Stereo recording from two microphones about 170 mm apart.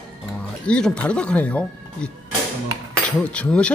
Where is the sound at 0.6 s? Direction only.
5° left (ahead or behind).